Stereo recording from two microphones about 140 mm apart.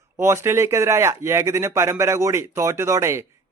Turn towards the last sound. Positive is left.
turn(degrees=-20)  # may be behind; listen again after turning